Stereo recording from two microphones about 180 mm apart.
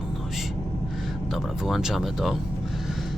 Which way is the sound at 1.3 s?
Centre (ahead or behind).